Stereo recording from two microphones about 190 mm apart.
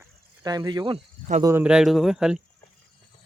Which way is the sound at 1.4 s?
10° right (ahead or behind).